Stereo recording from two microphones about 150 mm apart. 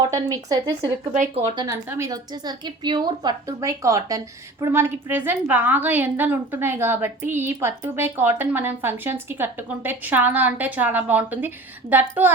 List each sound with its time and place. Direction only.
0.0 s a woman's voice: 25° right (ahead or behind)
1.1 s speech: 55° right (ahead or behind)
1.5 s a woman's voice: 25° right (ahead or behind)